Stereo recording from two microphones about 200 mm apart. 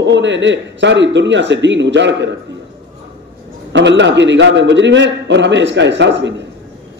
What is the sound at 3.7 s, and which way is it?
A man's voice, 65° right (ahead or behind).